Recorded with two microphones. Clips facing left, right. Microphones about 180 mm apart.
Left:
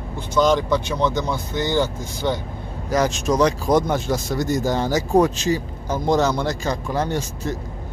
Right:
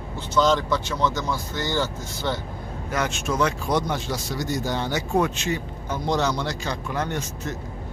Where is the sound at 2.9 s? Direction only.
35° left (ahead or behind).